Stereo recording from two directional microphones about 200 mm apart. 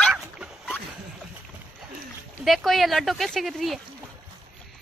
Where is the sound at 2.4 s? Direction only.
Centre (ahead or behind).